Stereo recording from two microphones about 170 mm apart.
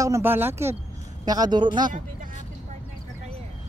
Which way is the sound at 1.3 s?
25° right (ahead or behind).